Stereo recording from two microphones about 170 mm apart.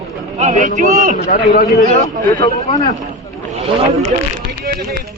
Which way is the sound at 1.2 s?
65° left (ahead or behind).